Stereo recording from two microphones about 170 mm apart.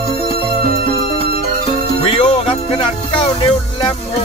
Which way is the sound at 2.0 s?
35° left (ahead or behind).